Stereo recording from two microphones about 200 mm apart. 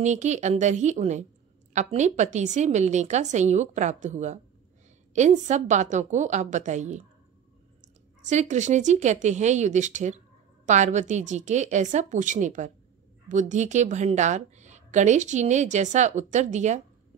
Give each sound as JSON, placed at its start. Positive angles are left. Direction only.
{"t": 0.0, "sound": "speech", "side_deg": -35}